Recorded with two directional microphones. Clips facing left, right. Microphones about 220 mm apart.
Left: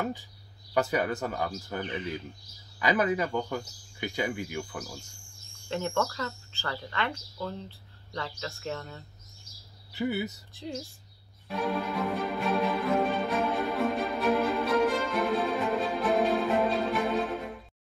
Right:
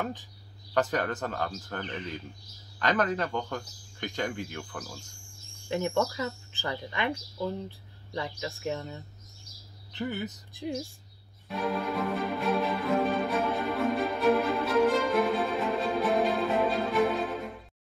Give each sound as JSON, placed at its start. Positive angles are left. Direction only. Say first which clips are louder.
{"t": 0.0, "sound": "speech", "louder": "left 2 dB", "side_deg": 10}
{"t": 5.7, "sound": "speech", "louder": "right 2 dB", "side_deg": -15}
{"t": 9.9, "sound": "speech", "louder": "left 3 dB", "side_deg": 10}
{"t": 10.5, "sound": "speech", "louder": "right 4 dB", "side_deg": -15}
{"t": 11.4, "sound": "music", "louder": "even", "side_deg": 0}